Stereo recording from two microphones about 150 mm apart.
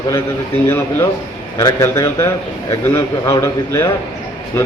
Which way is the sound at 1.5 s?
20° left (ahead or behind).